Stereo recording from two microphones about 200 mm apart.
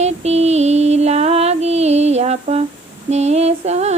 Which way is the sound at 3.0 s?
35° right (ahead or behind).